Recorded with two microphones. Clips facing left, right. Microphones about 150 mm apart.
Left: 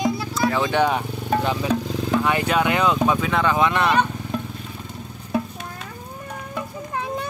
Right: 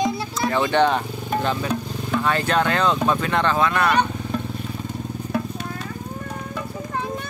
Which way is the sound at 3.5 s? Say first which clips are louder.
Even; 20° left (ahead or behind).